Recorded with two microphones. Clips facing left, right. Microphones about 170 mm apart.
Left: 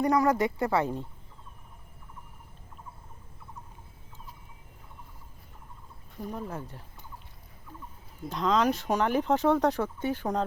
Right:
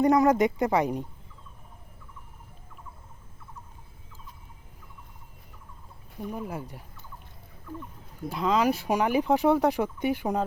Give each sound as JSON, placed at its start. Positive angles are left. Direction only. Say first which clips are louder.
{"t": 0.0, "sound": "speech", "louder": "right 4 dB", "side_deg": -20}
{"t": 6.3, "sound": "speech", "louder": "right 2 dB", "side_deg": -10}
{"t": 8.3, "sound": "speech", "louder": "right 1 dB", "side_deg": -10}